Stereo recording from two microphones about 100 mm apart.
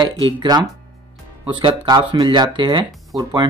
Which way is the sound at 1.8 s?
45° right (ahead or behind).